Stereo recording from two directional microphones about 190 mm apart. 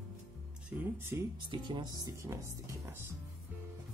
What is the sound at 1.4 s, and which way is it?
Speech, 25° right (ahead or behind).